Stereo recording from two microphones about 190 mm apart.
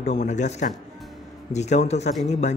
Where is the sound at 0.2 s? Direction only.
40° left (ahead or behind).